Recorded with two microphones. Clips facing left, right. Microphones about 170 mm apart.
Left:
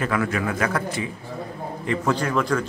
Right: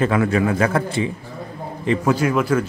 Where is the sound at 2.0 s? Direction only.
10° right (ahead or behind).